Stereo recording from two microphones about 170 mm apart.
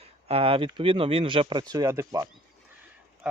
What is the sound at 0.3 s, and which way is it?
Speech, 35° right (ahead or behind).